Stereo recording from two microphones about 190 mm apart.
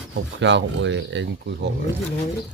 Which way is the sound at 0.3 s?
70° right (ahead or behind).